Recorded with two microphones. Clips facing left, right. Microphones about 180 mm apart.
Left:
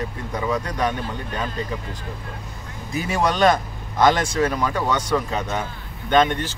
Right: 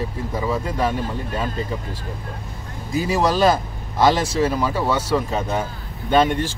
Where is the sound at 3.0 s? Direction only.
Centre (ahead or behind).